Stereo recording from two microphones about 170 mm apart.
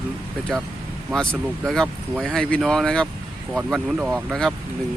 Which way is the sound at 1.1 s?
5° left (ahead or behind).